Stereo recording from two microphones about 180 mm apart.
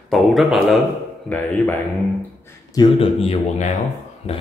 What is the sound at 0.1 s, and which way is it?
Speech, centre (ahead or behind).